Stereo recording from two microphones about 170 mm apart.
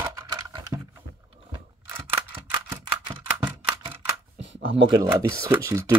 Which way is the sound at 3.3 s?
10° right (ahead or behind).